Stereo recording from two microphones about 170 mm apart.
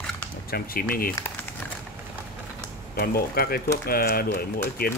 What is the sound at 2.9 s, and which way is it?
Speech, 60° left (ahead or behind).